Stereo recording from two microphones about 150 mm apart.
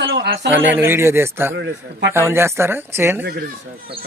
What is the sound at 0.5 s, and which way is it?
A man's voice, 10° right (ahead or behind).